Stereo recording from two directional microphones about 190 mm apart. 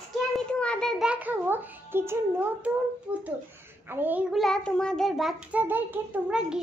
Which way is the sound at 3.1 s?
5° right (ahead or behind).